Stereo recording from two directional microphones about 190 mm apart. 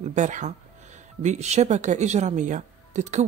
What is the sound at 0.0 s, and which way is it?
Speech, 40° right (ahead or behind).